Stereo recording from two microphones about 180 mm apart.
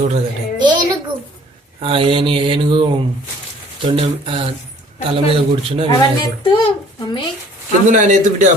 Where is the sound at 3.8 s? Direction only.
30° right (ahead or behind).